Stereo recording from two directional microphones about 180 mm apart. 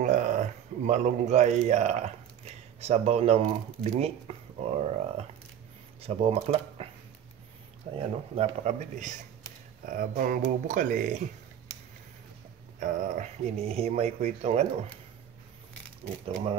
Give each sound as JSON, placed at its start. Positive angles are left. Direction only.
{"t": 0.0, "sound": "speech", "side_deg": -40}
{"t": 8.0, "sound": "speech", "side_deg": -35}
{"t": 12.8, "sound": "speech", "side_deg": -45}